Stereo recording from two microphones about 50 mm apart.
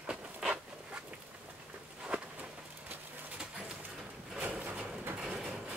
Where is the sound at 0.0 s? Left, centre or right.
Right.